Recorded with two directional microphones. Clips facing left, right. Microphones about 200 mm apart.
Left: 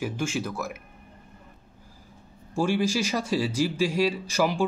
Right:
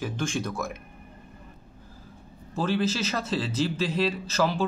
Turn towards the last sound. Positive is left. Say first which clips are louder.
# left 1 dB
turn(degrees=15)  # may be behind; listen again after turning